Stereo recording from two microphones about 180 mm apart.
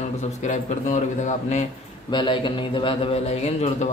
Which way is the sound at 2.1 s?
25° left (ahead or behind).